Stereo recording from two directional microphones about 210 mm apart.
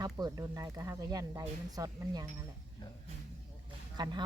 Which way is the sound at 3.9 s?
20° right (ahead or behind).